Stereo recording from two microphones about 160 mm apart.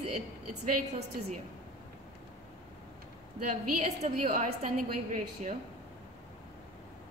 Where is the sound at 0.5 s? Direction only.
45° right (ahead or behind).